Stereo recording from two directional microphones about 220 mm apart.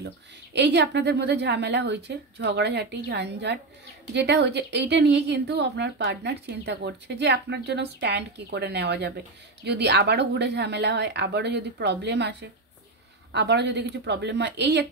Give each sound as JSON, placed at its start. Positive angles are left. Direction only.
{"t": 0.0, "sound": "a woman's voice", "side_deg": -50}